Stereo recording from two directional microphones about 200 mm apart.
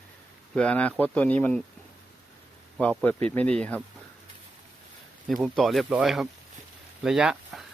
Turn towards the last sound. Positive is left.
turn(degrees=0)  # may be behind; listen again after turning